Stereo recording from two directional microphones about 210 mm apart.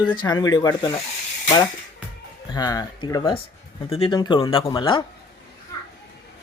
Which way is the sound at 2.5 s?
20° left (ahead or behind).